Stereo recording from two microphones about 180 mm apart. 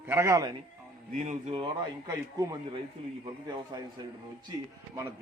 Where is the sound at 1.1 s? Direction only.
45° right (ahead or behind).